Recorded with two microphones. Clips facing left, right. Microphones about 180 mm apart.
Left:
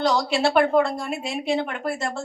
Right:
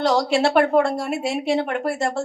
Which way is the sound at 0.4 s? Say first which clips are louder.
Even; 75° right (ahead or behind).